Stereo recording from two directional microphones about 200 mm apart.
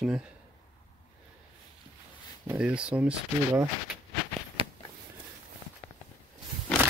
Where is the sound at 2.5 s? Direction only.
5° right (ahead or behind).